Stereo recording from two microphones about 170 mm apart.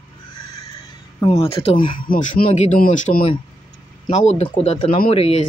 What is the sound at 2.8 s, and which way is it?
Speech, 50° left (ahead or behind).